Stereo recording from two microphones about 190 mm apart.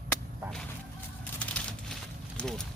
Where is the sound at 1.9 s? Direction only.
5° left (ahead or behind).